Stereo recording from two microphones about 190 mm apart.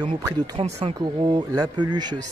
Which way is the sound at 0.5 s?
35° right (ahead or behind).